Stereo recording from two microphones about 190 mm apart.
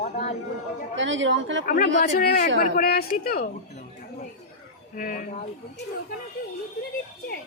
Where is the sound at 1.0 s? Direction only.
80° right.